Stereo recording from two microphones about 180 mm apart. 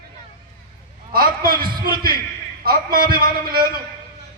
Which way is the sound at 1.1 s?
55° right (ahead or behind).